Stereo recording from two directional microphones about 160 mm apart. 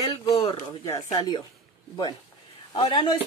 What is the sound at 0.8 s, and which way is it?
Speech, 25° left (ahead or behind).